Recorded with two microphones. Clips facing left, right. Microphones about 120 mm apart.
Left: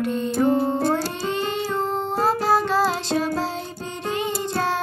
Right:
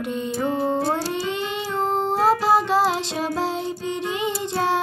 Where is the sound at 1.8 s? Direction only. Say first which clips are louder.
Right 5 dB; 25° right (ahead or behind).